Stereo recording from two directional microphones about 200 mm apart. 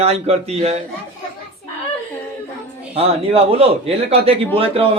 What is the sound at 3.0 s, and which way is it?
A man's voice, 30° right (ahead or behind).